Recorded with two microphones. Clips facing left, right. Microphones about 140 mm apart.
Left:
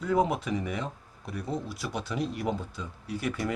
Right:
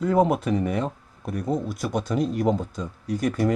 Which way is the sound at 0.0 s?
50° right (ahead or behind).